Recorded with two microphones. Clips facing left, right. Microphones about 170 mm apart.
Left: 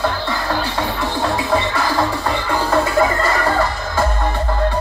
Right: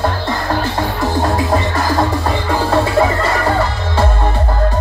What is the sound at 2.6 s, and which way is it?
Music, 25° right (ahead or behind).